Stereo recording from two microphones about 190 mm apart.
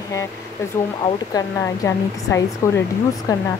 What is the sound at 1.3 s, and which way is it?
A woman's voice, 15° left (ahead or behind).